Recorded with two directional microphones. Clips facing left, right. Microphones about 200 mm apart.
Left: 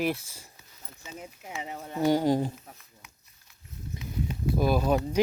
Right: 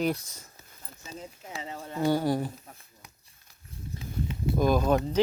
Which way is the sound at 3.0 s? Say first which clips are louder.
Right 3 dB; 35° right (ahead or behind).